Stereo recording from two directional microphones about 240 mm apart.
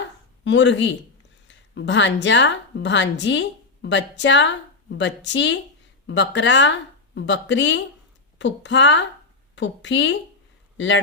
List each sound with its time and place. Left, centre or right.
0.4 s a woman's voice: left
1.5 s a sound: left
2.2 s a woman's voice: left